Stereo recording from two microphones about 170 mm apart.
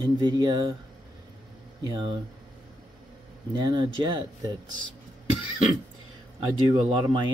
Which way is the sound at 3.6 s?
25° right (ahead or behind).